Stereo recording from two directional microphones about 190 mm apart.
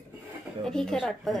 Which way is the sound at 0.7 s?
5° left (ahead or behind).